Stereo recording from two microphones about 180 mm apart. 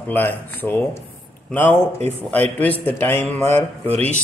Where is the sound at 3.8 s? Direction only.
35° right (ahead or behind).